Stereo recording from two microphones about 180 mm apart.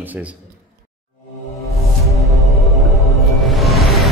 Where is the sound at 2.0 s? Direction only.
Centre (ahead or behind).